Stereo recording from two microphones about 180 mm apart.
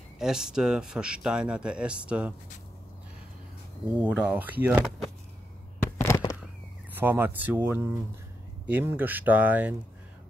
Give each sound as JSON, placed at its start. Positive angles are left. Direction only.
{"t": 0.2, "sound": "speech", "side_deg": -5}
{"t": 3.8, "sound": "speech", "side_deg": -5}
{"t": 5.9, "sound": "a sound", "side_deg": 15}
{"t": 7.0, "sound": "speech", "side_deg": -10}